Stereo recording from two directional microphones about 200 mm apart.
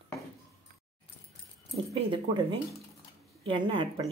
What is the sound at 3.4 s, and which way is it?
Speech, 25° right (ahead or behind).